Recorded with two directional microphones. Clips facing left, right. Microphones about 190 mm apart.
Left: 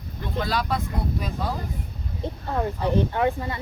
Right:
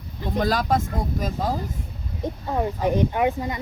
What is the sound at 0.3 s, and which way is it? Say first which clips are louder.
Speech: right 4 dB; 45° right (ahead or behind).